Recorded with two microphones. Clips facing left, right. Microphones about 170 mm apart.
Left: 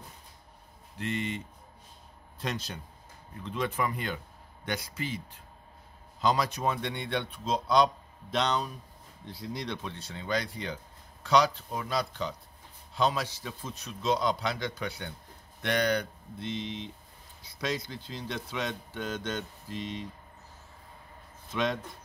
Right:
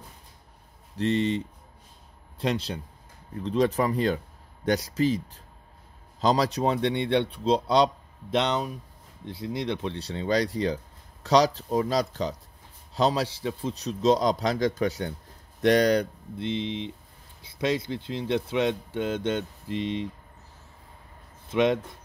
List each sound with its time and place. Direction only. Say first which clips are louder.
0.9 s a man's voice: right 9 dB; 35° right (ahead or behind)
6.2 s a man's voice: right 5 dB; 35° right (ahead or behind)
10.0 s a man's voice: right 7 dB; 35° right (ahead or behind)
21.5 s speech: right 8 dB; 20° right (ahead or behind)